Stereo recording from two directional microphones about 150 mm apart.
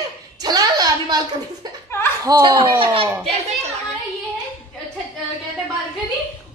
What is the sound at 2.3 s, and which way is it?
Speech, 25° right (ahead or behind).